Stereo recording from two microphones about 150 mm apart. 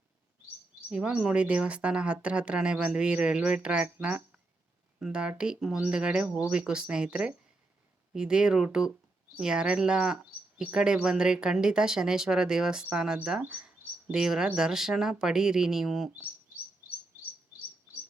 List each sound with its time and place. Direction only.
0.9 s a woman's voice: 5° right (ahead or behind)